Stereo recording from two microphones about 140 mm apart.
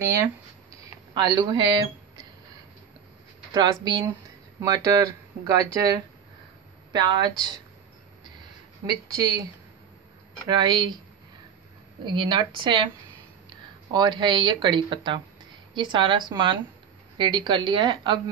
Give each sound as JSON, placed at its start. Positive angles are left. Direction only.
{"t": 0.0, "sound": "speech", "side_deg": -20}
{"t": 3.5, "sound": "speech", "side_deg": -25}
{"t": 10.5, "sound": "speech", "side_deg": -30}
{"t": 12.0, "sound": "speech", "side_deg": -35}
{"t": 13.9, "sound": "speech", "side_deg": -30}